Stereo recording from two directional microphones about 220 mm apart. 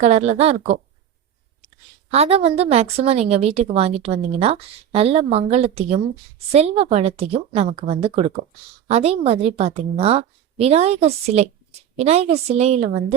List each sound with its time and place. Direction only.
0.0 s a woman's voice: 30° right (ahead or behind)
2.0 s a woman's voice: 30° right (ahead or behind)